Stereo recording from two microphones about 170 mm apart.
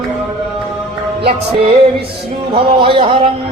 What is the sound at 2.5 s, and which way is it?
Music, 30° right (ahead or behind).